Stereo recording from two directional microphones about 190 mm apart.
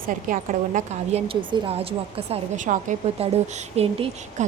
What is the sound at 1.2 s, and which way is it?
A woman's voice, 30° right (ahead or behind).